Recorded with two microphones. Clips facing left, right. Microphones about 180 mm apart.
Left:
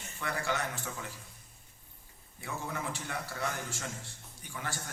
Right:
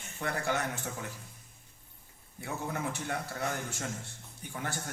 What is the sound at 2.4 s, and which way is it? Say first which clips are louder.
A man's voice: right 3 dB; 55° right (ahead or behind).